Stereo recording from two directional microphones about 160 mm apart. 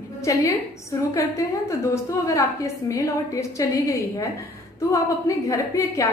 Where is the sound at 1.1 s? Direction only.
20° left (ahead or behind).